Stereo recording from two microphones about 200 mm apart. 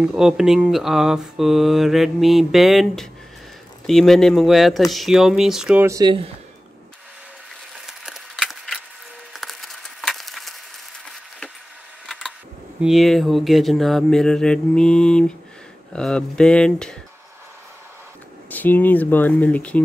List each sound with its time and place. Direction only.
0.0 s speech: 5° right (ahead or behind)
5.9 s speech: 20° right (ahead or behind)
7.7 s a sound: centre (ahead or behind)
12.8 s speech: centre (ahead or behind)
18.5 s speech: 10° left (ahead or behind)